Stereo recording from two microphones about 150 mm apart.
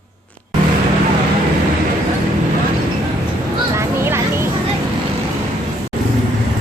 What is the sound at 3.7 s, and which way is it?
Music, 15° right (ahead or behind).